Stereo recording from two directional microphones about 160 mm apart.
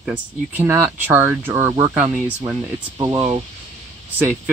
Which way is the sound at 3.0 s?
20° right (ahead or behind).